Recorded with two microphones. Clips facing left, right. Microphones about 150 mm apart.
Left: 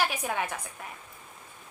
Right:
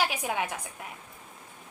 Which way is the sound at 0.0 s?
15° right (ahead or behind).